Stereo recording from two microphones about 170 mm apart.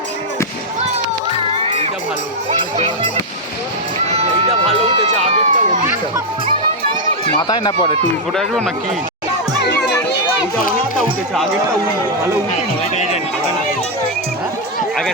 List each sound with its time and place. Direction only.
4.0 s run: 35° right (ahead or behind)
7.3 s speech: 25° left (ahead or behind)
8.3 s speech: centre (ahead or behind)
9.6 s music: 80° left